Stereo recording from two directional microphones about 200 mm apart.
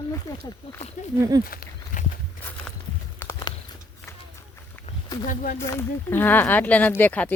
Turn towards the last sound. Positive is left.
turn(degrees=10)  # may be behind; listen again after turning